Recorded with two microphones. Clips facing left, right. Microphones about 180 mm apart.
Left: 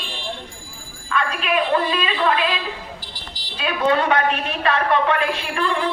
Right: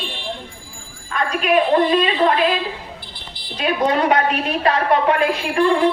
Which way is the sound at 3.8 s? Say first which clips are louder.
Even; 40° right (ahead or behind).